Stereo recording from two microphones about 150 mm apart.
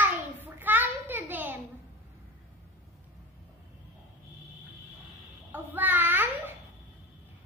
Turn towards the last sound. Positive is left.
turn(degrees=-15)  # may be behind; listen again after turning